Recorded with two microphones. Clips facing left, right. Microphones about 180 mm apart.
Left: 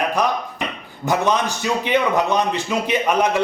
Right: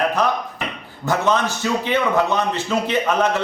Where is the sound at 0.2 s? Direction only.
15° left (ahead or behind).